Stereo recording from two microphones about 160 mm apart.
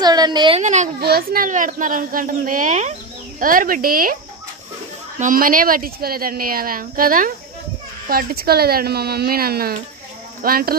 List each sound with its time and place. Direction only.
0.0 s a woman's voice: 25° right (ahead or behind)
0.6 s speech: 45° right (ahead or behind)
1.0 s a woman's voice: 70° right (ahead or behind)
5.2 s a woman's voice: 60° right (ahead or behind)